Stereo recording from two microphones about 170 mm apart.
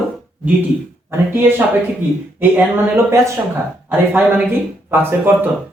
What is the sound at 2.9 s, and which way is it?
Speech, 15° right (ahead or behind).